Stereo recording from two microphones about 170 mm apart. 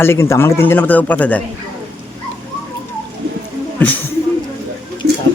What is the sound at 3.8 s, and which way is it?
Speech, 10° left (ahead or behind).